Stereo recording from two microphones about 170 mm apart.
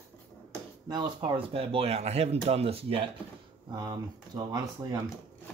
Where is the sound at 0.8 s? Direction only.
25° right (ahead or behind).